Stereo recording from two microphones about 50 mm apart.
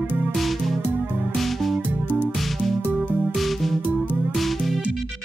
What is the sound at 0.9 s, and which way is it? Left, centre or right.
Music, right.